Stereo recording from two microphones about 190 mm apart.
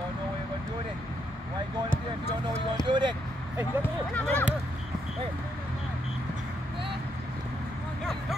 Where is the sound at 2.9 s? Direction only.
25° right (ahead or behind).